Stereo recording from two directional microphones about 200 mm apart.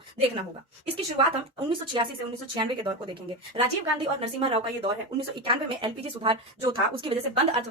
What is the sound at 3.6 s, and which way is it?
A woman's voice, 30° right (ahead or behind).